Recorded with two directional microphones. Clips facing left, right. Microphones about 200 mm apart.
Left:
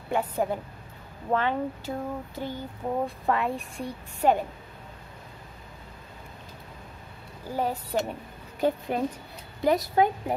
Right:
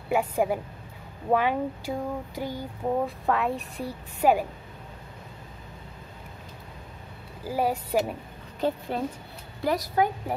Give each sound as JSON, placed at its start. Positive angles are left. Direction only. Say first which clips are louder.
{"t": 0.1, "sound": "a woman's voice", "louder": "right 2 dB", "side_deg": -10}
{"t": 7.4, "sound": "speech", "louder": "right 3 dB", "side_deg": -10}
{"t": 8.5, "sound": "a woman's voice", "louder": "left 2 dB", "side_deg": 15}